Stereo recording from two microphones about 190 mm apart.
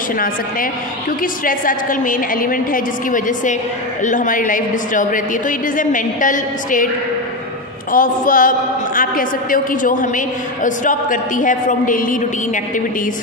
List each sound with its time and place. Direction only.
1.2 s a woman's voice: 45° left (ahead or behind)
7.9 s a woman's voice: 45° left (ahead or behind)